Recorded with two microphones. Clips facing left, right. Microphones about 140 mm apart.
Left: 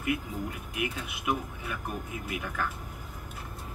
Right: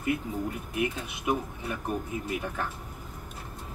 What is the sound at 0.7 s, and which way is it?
Speech, 35° right (ahead or behind).